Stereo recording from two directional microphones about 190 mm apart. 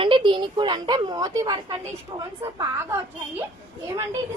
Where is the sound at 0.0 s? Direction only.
25° right (ahead or behind).